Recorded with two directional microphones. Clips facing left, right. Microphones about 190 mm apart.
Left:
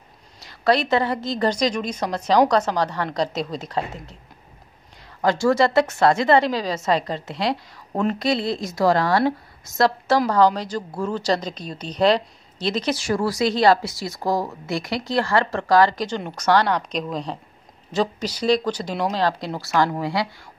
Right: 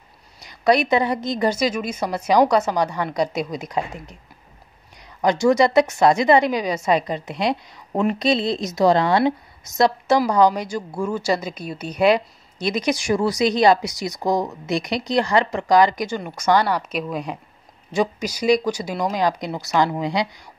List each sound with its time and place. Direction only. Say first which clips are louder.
0.4 s a woman's voice: right 2 dB; 15° right (ahead or behind)
5.2 s a woman's voice: right 2 dB; 15° right (ahead or behind)